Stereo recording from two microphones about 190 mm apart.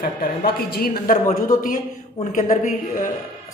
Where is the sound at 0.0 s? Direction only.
55° left (ahead or behind).